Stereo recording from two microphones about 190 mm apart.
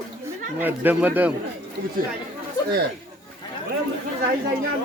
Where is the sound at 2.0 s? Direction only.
50° right (ahead or behind).